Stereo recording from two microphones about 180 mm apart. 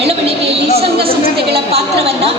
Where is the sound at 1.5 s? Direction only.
35° right (ahead or behind).